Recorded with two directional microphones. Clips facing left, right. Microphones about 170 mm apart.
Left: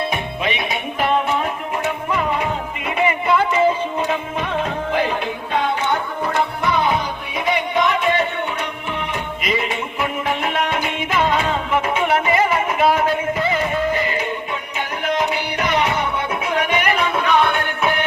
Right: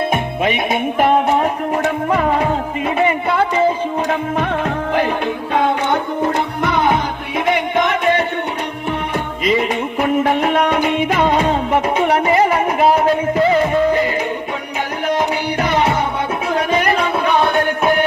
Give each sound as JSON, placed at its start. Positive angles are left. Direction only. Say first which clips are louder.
{"t": 0.1, "sound": "music", "louder": "right 5 dB", "side_deg": -45}
{"t": 5.5, "sound": "music", "louder": "right 3 dB", "side_deg": -50}
{"t": 9.6, "sound": "music", "louder": "right 5 dB", "side_deg": -45}
{"t": 11.3, "sound": "music", "louder": "right 4 dB", "side_deg": -35}
{"t": 15.5, "sound": "music", "louder": "right 4 dB", "side_deg": -30}
{"t": 16.6, "sound": "a sound", "louder": "right 3 dB", "side_deg": -35}
{"t": 17.4, "sound": "music", "louder": "right 4 dB", "side_deg": -40}